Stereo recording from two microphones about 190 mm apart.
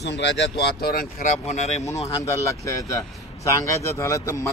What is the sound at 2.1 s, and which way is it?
A man's voice, 15° left (ahead or behind).